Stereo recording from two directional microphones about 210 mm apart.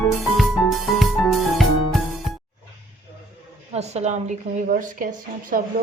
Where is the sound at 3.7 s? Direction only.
30° right (ahead or behind).